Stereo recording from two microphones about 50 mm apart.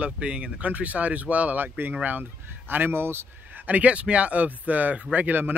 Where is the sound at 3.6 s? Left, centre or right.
Right.